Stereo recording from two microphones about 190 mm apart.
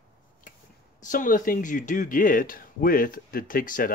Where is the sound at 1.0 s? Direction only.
45° left (ahead or behind).